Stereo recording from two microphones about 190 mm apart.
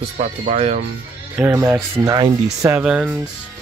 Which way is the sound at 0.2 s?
35° right (ahead or behind).